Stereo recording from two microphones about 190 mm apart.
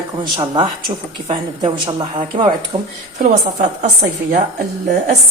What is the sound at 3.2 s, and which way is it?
A woman's voice, 40° right (ahead or behind).